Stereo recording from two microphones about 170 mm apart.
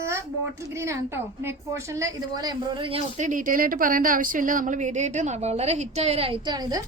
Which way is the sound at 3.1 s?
50° right (ahead or behind).